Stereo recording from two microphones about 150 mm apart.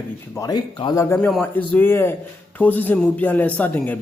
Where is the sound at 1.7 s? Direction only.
15° left (ahead or behind).